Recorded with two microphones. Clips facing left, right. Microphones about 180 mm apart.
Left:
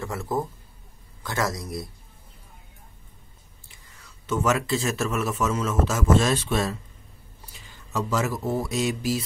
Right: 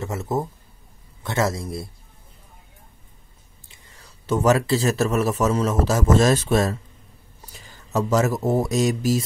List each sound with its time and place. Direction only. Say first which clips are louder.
0.0 s a man's voice: right 2 dB; 20° right (ahead or behind)
3.6 s speech: right 3 dB; 25° right (ahead or behind); by 9.2 s 45° right (ahead or behind)